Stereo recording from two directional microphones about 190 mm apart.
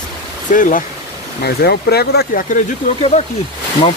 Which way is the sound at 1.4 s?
55° left (ahead or behind).